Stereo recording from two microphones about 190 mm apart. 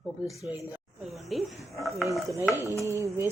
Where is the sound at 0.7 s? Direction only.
5° right (ahead or behind).